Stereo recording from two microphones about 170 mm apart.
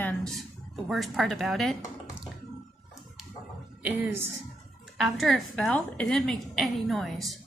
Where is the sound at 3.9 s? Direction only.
10° right (ahead or behind).